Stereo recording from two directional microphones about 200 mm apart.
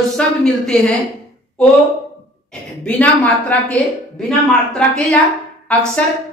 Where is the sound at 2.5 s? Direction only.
5° left (ahead or behind).